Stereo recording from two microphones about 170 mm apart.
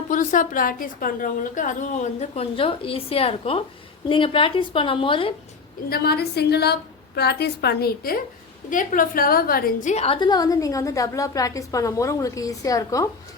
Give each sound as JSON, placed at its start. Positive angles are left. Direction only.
{"t": 0.1, "sound": "a woman's voice", "side_deg": 50}
{"t": 5.9, "sound": "a woman's voice", "side_deg": 65}
{"t": 8.7, "sound": "a woman's voice", "side_deg": 50}
{"t": 9.9, "sound": "a woman's voice", "side_deg": 35}